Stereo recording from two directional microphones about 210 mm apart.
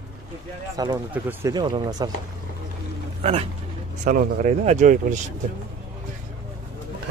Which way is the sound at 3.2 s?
30° right (ahead or behind).